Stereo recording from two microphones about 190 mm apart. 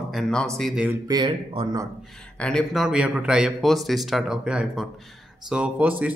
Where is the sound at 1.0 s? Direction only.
25° right (ahead or behind).